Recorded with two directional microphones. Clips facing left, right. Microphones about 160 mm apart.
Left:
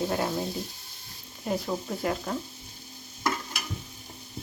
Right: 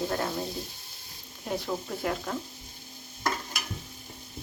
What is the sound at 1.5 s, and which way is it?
Speech, centre (ahead or behind).